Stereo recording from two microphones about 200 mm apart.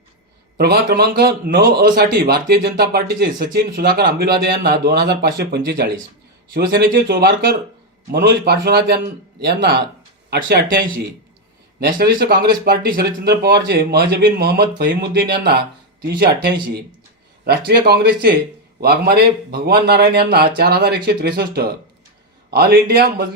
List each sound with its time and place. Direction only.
0.5 s a man's voice: 50° right (ahead or behind)